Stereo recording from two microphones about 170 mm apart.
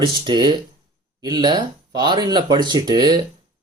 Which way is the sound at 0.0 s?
25° right (ahead or behind).